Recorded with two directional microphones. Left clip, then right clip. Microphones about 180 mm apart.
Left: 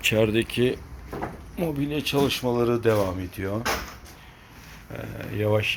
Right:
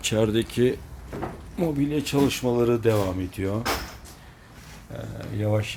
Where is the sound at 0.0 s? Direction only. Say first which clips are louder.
Left 2 dB; 5° right (ahead or behind).